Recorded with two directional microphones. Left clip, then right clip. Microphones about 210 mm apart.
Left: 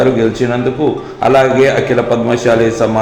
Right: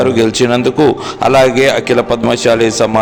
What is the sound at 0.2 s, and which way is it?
A man's voice, 35° right (ahead or behind).